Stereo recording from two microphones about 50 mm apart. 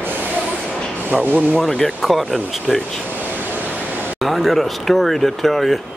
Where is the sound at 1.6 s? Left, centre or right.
Centre.